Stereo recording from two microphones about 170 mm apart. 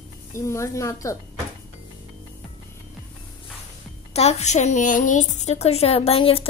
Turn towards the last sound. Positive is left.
turn(degrees=35)  # may be behind; listen again after turning